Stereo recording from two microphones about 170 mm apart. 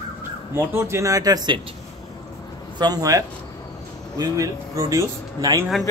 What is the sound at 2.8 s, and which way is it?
Speech, 20° right (ahead or behind).